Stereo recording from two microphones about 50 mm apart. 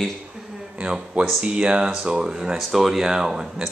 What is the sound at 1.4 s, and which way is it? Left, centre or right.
A man's voice, centre.